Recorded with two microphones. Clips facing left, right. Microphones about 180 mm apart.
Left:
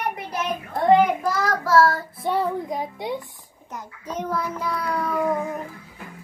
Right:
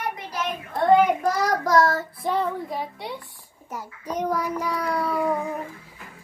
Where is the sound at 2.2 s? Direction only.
5° left (ahead or behind).